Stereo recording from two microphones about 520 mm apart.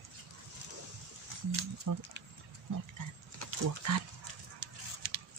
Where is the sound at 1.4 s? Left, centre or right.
Right.